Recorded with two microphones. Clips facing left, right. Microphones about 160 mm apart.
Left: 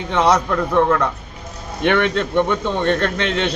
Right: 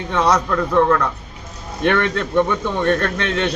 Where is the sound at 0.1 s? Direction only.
20° left (ahead or behind).